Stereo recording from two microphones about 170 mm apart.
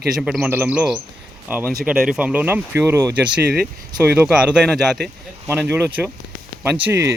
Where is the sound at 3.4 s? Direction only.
70° right (ahead or behind).